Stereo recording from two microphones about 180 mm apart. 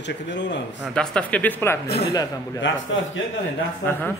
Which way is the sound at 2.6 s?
90° left.